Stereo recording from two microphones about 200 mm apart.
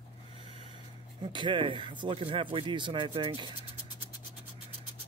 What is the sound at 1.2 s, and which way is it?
Speech, 25° right (ahead or behind).